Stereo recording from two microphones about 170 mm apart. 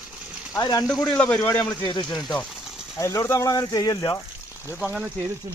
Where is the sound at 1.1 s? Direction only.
5° left (ahead or behind).